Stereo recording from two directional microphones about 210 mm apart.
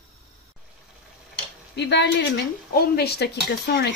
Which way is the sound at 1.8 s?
55° left (ahead or behind).